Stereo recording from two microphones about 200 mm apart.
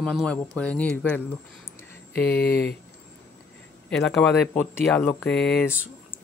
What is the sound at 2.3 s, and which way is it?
Speech, 55° left (ahead or behind).